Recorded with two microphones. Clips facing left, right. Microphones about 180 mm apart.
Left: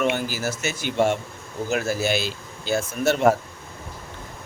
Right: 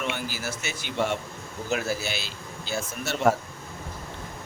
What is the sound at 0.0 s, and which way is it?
Speech, 45° left (ahead or behind).